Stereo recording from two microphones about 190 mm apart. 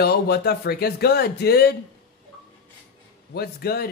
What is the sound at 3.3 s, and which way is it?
Speech, 55° left (ahead or behind).